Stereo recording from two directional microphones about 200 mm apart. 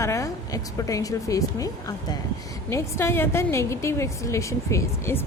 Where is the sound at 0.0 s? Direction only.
15° left (ahead or behind).